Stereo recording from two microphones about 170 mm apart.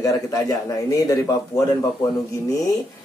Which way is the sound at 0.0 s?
20° left (ahead or behind).